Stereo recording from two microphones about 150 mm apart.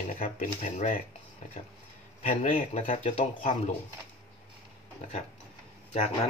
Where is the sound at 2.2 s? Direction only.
55° left (ahead or behind).